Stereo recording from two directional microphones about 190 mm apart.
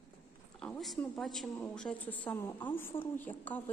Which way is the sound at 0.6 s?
Centre (ahead or behind).